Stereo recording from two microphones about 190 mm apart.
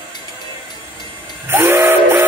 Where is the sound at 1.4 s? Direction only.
10° right (ahead or behind).